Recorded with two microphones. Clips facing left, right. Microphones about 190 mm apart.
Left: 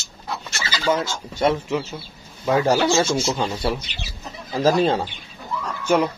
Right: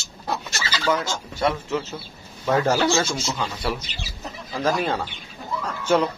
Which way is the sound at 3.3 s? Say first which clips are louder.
Left 4 dB; 25° left (ahead or behind).